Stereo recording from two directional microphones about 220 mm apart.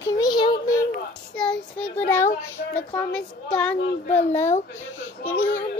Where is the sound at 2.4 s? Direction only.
10° left (ahead or behind).